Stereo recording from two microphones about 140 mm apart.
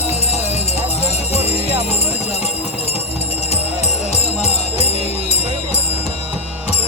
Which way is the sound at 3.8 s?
50° left (ahead or behind).